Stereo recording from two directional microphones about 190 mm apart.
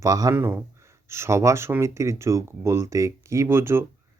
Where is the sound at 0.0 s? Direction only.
15° right (ahead or behind).